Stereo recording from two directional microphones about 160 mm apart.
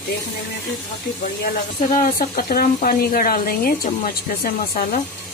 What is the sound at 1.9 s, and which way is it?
Speech, 65° left (ahead or behind).